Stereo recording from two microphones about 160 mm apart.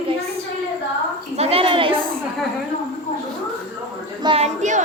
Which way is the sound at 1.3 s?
40° right (ahead or behind).